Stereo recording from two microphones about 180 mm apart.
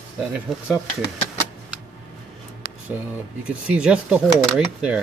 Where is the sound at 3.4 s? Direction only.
5° right (ahead or behind).